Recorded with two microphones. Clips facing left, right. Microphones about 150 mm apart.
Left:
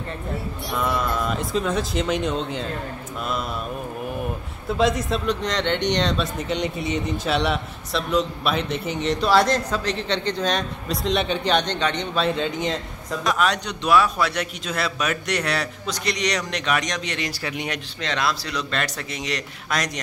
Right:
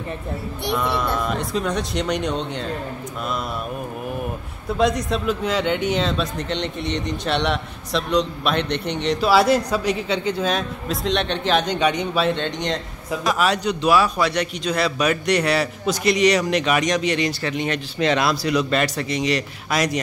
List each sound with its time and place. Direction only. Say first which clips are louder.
0.7 s a man's voice: even; centre (ahead or behind)
4.6 s a man's voice: right 1 dB; centre (ahead or behind)
12.3 s a man's voice: right 1 dB; 5° left (ahead or behind)
17.3 s speech: right 5 dB; 10° left (ahead or behind)
17.9 s a man's voice: right 6 dB; 10° right (ahead or behind)